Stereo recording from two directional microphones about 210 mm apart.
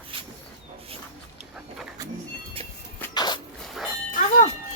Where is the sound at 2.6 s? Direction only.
30° right (ahead or behind).